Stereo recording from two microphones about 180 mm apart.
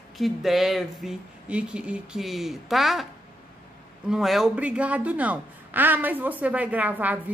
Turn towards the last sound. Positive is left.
turn(degrees=-10)  # may be behind; listen again after turning